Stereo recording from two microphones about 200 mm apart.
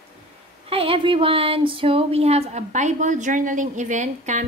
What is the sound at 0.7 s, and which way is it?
Speech, 30° right (ahead or behind).